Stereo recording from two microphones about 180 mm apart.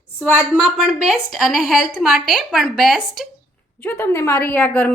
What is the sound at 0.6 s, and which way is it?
A woman's voice, 5° right (ahead or behind).